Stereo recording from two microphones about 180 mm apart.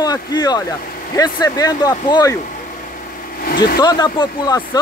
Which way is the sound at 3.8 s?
25° left (ahead or behind).